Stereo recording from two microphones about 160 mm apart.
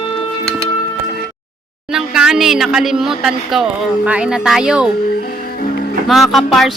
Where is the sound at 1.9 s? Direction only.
5° right (ahead or behind).